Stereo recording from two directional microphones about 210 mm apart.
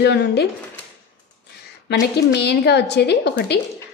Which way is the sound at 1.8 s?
50° left (ahead or behind).